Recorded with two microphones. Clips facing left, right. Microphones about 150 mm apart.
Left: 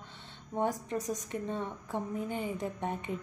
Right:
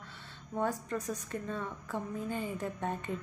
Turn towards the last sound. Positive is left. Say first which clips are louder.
# left 1 dB
turn(degrees=15)  # may be behind; listen again after turning